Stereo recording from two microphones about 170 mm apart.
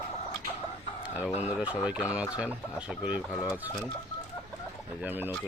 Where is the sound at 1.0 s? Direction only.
5° right (ahead or behind).